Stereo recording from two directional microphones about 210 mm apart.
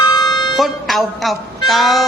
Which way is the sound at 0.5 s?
Centre (ahead or behind).